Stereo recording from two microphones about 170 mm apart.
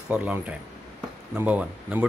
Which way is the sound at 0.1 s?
10° right (ahead or behind).